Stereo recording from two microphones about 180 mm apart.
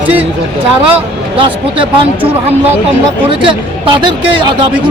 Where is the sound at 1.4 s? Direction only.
30° right (ahead or behind).